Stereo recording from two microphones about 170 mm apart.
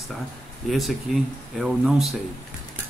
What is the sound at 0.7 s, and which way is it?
Speech, centre (ahead or behind).